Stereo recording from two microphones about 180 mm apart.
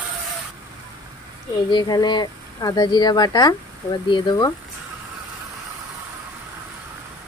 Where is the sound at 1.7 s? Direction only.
25° left (ahead or behind).